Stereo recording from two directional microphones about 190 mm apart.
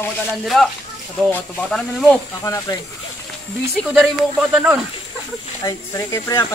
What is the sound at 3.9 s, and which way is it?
Speech, 5° right (ahead or behind).